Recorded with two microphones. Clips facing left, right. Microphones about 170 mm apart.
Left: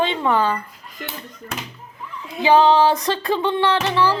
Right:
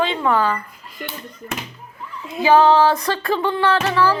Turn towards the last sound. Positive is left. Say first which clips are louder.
# right 1 dB
turn(degrees=15)  # may be behind; listen again after turning